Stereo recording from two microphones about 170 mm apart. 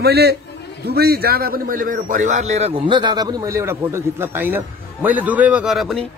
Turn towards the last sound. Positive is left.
turn(degrees=0)  # may be behind; listen again after turning